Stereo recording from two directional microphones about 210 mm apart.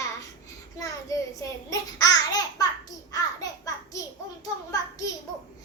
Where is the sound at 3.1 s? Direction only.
15° left (ahead or behind).